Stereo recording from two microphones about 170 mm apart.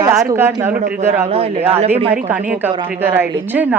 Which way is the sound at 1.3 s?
35° right (ahead or behind).